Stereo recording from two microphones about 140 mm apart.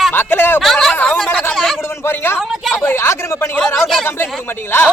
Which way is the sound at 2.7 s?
15° left (ahead or behind).